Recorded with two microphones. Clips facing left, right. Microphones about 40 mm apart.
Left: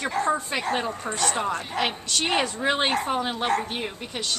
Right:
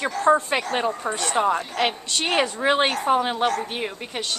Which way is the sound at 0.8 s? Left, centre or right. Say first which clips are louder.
Right 3 dB; centre.